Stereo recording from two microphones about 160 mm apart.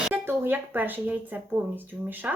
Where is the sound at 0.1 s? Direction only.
15° right (ahead or behind).